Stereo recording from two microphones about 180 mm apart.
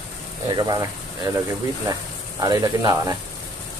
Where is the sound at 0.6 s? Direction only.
20° right (ahead or behind).